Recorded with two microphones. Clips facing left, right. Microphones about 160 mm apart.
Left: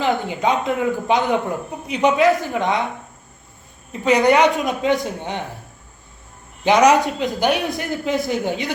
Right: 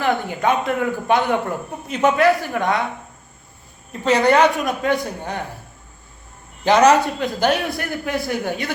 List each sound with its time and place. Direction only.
0.0 s a man's voice: 20° left (ahead or behind)
4.0 s a man's voice: 10° left (ahead or behind)
6.7 s a man's voice: 10° left (ahead or behind)